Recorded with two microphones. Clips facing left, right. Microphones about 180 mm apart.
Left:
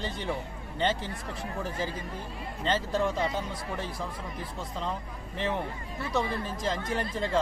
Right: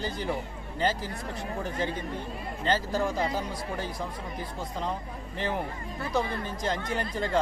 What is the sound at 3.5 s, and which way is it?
Speech, 25° left (ahead or behind).